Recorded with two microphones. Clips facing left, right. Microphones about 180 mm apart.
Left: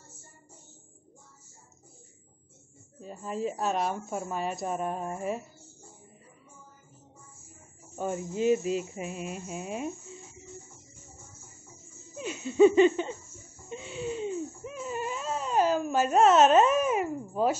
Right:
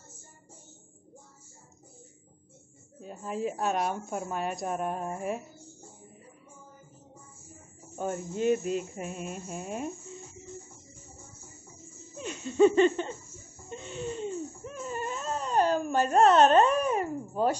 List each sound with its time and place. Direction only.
3.0 s a woman's voice: centre (ahead or behind)
8.0 s a woman's voice: 5° left (ahead or behind)
12.2 s laughter: 5° left (ahead or behind)
13.7 s a sound: 5° left (ahead or behind)